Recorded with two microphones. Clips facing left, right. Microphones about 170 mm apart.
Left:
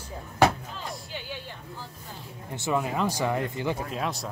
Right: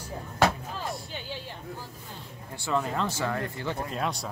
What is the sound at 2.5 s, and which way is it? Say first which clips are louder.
Speech: left 1 dB; 15° left (ahead or behind).